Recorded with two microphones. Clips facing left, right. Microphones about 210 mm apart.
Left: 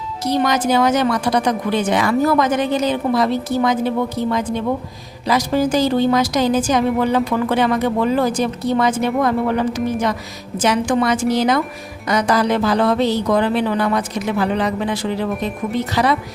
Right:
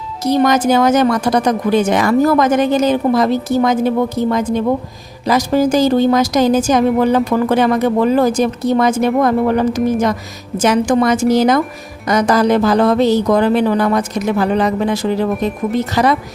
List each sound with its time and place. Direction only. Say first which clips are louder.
0.3 s a woman's voice: right 5 dB; 45° right (ahead or behind)